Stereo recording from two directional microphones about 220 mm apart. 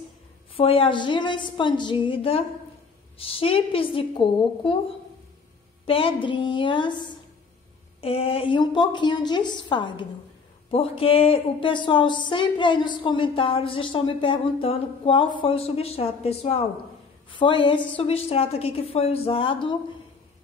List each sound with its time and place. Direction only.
0.6 s speech: 25° left (ahead or behind)
5.9 s a woman's voice: 25° left (ahead or behind)
8.0 s speech: 25° left (ahead or behind)